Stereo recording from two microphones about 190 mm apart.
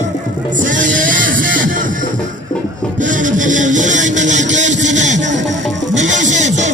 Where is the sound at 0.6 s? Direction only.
45° right (ahead or behind).